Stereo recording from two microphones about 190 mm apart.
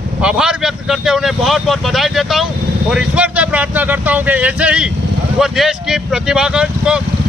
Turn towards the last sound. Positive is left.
turn(degrees=-5)  # may be behind; listen again after turning